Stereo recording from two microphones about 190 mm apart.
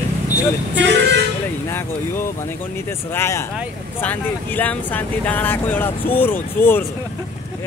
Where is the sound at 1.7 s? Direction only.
10° left (ahead or behind).